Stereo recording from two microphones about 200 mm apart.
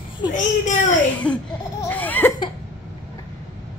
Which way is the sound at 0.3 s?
40° left (ahead or behind).